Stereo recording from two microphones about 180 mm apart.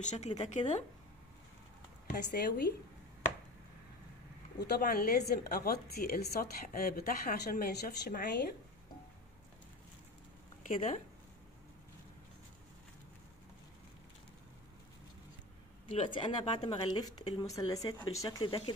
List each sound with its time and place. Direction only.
0.0 s speech: 40° left (ahead or behind)
2.3 s a woman's voice: 60° left (ahead or behind)
4.6 s a woman's voice: 60° left (ahead or behind)
10.7 s speech: 45° left (ahead or behind)
15.9 s speech: 30° left (ahead or behind)